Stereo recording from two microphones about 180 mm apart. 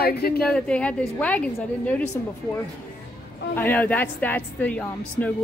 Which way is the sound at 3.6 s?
10° left (ahead or behind).